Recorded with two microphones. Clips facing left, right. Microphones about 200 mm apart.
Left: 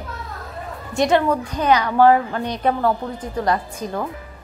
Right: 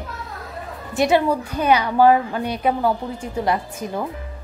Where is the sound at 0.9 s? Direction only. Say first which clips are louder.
Even; 5° right (ahead or behind).